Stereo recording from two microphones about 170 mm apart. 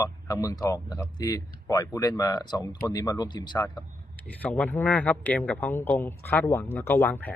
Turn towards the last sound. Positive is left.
turn(degrees=10)  # may be behind; listen again after turning